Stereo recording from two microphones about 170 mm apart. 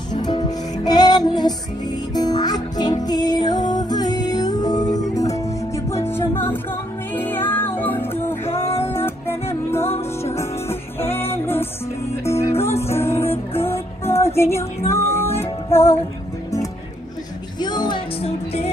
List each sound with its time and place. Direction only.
0.1 s music: 25° left (ahead or behind)
9.8 s music: 35° left (ahead or behind)
10.3 s music: 15° left (ahead or behind)
17.6 s music: 25° left (ahead or behind)